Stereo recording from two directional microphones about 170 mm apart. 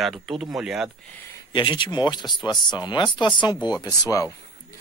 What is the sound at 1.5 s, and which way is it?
Speech, 30° left (ahead or behind).